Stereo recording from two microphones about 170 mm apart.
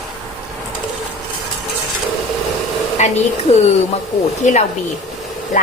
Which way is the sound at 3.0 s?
45° left (ahead or behind).